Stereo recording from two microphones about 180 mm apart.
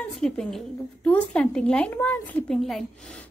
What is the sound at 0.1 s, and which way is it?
A woman's voice, centre (ahead or behind).